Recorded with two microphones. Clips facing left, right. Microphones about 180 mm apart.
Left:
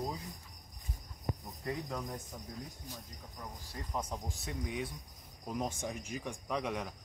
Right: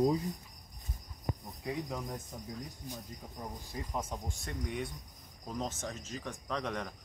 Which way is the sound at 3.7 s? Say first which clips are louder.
Even; 5° right (ahead or behind).